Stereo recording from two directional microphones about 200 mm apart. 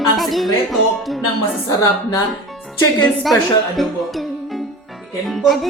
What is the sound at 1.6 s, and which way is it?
Speech, 15° left (ahead or behind).